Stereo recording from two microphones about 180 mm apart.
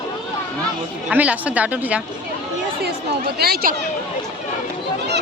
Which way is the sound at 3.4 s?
60° right (ahead or behind).